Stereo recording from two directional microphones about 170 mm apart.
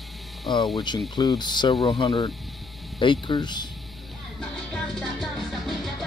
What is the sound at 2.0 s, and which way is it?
Speech, 30° left (ahead or behind).